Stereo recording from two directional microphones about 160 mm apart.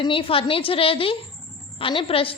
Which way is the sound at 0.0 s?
35° left (ahead or behind).